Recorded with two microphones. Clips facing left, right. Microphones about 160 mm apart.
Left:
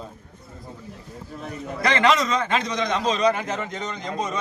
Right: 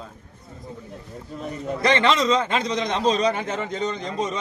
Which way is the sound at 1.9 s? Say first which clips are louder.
Right 1 dB; 30° right (ahead or behind).